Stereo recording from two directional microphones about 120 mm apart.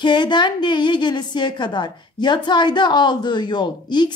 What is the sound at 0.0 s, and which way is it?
A woman's voice, 40° left (ahead or behind).